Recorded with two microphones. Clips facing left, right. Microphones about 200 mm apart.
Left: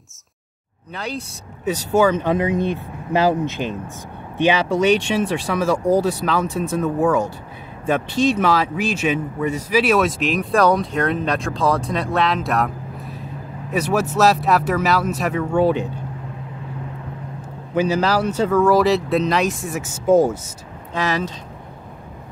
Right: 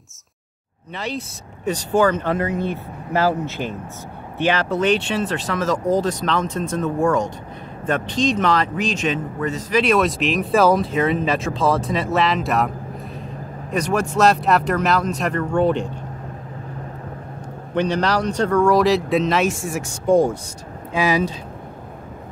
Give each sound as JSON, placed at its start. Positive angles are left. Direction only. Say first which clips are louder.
{"t": 0.9, "sound": "speech", "louder": "right 1 dB", "side_deg": 0}
{"t": 17.7, "sound": "speech", "louder": "left 1 dB", "side_deg": 5}
{"t": 20.9, "sound": "speech", "louder": "right 3 dB", "side_deg": -10}